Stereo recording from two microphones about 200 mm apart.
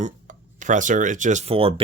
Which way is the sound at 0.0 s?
40° right (ahead or behind).